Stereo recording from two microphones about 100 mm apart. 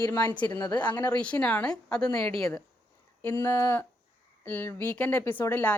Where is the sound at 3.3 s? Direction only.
35° left (ahead or behind).